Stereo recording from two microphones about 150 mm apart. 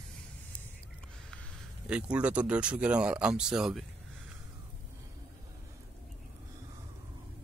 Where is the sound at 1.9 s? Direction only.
10° right (ahead or behind).